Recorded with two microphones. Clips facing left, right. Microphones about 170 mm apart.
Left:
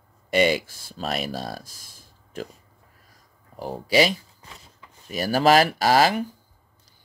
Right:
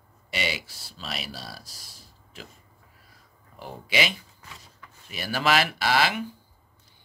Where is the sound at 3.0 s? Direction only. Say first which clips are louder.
Left 1 dB; 40° left (ahead or behind).